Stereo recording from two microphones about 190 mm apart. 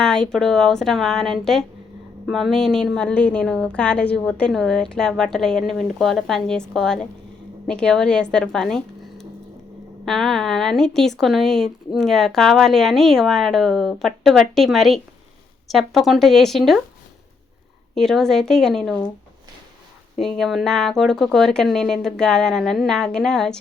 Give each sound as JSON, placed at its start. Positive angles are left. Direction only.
{"t": 0.0, "sound": "a woman's voice", "side_deg": 5}
{"t": 17.9, "sound": "speech", "side_deg": 0}
{"t": 20.1, "sound": "speech", "side_deg": 0}